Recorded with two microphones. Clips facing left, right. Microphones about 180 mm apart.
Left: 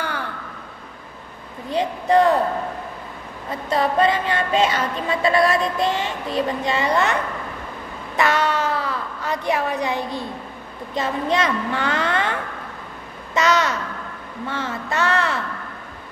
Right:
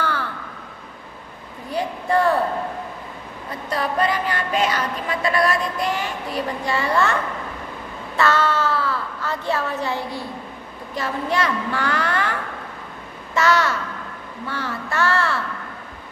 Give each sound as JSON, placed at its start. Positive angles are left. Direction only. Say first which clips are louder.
{"t": 1.7, "sound": "a woman's voice", "louder": "left 3 dB", "side_deg": 20}
{"t": 3.7, "sound": "a woman's voice", "louder": "left 3 dB", "side_deg": 25}
{"t": 8.2, "sound": "a sound", "louder": "even", "side_deg": 15}
{"t": 11.0, "sound": "a woman's voice", "louder": "left 2 dB", "side_deg": 20}